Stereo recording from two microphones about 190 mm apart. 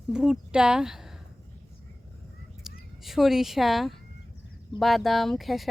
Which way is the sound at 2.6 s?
Centre (ahead or behind).